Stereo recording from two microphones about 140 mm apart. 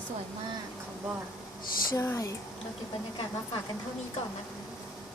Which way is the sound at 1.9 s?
20° left (ahead or behind).